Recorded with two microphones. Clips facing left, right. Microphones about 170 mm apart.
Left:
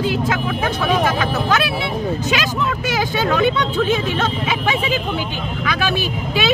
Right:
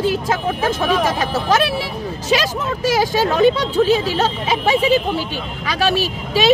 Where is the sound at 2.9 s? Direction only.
40° right (ahead or behind).